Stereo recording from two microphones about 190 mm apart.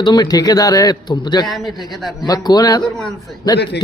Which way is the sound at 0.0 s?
20° left (ahead or behind).